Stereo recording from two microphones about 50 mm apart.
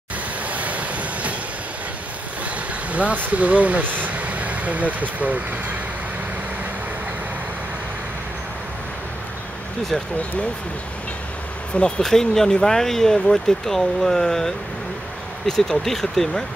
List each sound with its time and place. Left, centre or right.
0.5 s vehicle: right
2.9 s vehicle: right
3.2 s speech: right
12.0 s speech: centre